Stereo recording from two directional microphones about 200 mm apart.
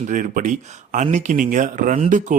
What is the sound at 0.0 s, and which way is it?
Speech, 40° right (ahead or behind).